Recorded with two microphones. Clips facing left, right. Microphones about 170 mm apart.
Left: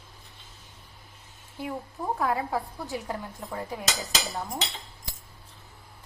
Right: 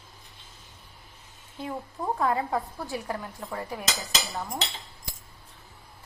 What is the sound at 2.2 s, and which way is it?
Speech, 5° left (ahead or behind).